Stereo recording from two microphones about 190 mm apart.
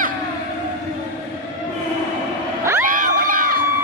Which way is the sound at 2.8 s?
45° right (ahead or behind).